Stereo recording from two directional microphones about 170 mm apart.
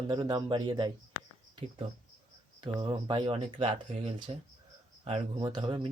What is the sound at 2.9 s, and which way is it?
Speech, 25° right (ahead or behind).